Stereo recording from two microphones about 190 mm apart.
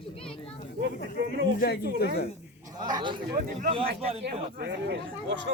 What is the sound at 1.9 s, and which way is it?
Speech, 55° left (ahead or behind).